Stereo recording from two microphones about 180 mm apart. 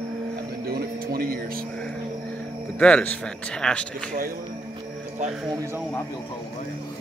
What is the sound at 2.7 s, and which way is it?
A man's voice, 5° left (ahead or behind).